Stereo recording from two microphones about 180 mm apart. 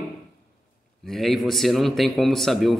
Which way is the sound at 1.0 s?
Centre (ahead or behind).